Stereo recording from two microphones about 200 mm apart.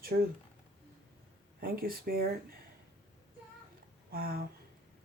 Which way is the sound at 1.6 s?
50° right (ahead or behind).